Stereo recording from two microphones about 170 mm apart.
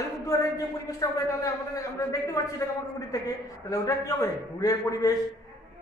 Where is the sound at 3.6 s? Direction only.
20° left (ahead or behind).